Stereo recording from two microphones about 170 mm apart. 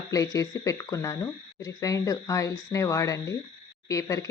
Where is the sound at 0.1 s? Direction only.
20° left (ahead or behind).